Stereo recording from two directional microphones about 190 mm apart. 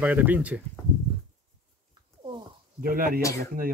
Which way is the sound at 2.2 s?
25° right (ahead or behind).